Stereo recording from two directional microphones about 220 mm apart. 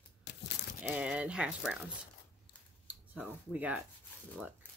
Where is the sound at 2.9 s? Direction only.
5° right (ahead or behind).